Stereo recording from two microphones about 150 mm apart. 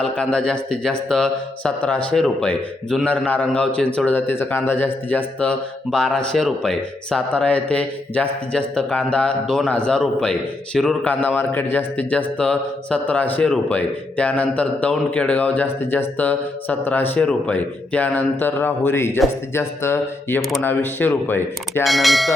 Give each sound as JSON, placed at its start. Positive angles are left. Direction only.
{"t": 0.0, "sound": "a man's voice", "side_deg": 5}
{"t": 21.8, "sound": "speech", "side_deg": 0}